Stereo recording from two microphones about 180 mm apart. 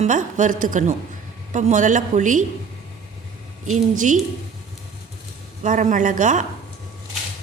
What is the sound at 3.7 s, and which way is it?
Speech, 45° right (ahead or behind).